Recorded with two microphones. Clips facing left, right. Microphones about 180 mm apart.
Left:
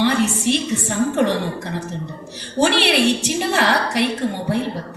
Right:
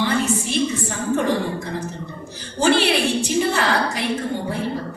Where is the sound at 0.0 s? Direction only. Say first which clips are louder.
Left 3 dB; 75° left (ahead or behind).